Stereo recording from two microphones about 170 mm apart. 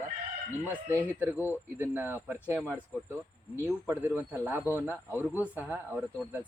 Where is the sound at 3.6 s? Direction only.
15° right (ahead or behind).